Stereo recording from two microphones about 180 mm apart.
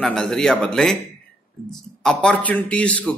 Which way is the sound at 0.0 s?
5° left (ahead or behind).